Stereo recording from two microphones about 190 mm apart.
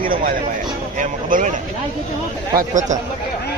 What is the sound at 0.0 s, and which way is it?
Speech, 45° right (ahead or behind).